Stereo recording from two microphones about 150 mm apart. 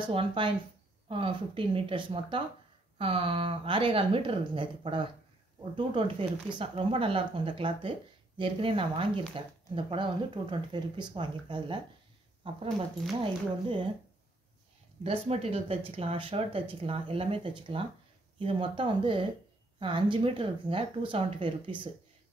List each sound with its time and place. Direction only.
0.0 s speech: 35° right (ahead or behind)
15.0 s speech: 45° right (ahead or behind)